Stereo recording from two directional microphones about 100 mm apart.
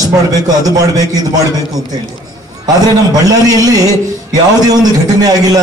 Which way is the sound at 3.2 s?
40° right (ahead or behind).